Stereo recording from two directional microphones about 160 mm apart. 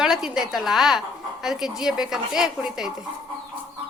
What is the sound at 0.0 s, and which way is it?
A woman's voice, 5° right (ahead or behind).